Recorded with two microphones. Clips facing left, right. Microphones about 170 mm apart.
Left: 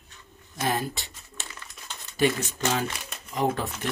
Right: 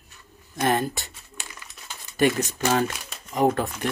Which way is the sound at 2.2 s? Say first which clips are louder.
Right 3 dB; 50° right (ahead or behind).